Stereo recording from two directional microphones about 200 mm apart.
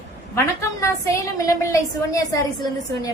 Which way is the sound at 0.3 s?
15° left (ahead or behind).